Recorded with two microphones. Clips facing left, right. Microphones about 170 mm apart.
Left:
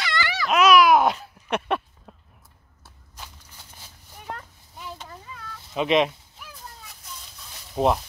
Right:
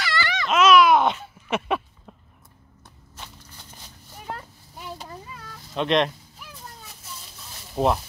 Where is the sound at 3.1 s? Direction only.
5° left (ahead or behind).